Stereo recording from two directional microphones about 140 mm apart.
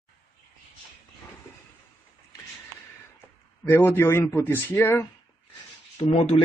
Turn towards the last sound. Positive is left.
turn(degrees=55)  # may be behind; listen again after turning